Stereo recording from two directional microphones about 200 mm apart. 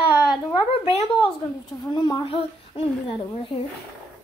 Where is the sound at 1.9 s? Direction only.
20° left (ahead or behind).